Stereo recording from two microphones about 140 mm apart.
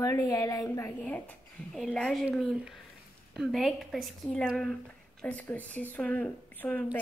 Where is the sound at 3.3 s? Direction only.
Centre (ahead or behind).